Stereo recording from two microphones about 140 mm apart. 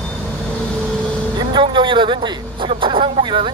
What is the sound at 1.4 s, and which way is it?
Speech, 30° right (ahead or behind).